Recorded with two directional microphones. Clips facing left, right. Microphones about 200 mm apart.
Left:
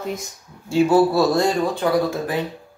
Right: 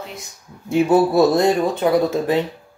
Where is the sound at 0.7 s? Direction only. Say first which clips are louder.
Even; 20° right (ahead or behind).